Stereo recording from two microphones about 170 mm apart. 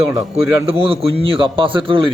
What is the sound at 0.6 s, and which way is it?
A man's voice, 35° right (ahead or behind).